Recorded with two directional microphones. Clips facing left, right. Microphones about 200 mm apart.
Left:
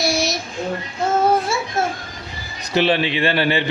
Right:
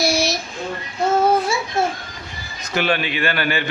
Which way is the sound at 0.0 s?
Centre (ahead or behind).